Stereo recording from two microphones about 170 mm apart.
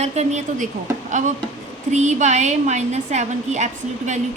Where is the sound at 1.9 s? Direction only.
40° right (ahead or behind).